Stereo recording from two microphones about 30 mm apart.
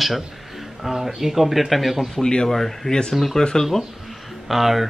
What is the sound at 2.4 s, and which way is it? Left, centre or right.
Speech, centre.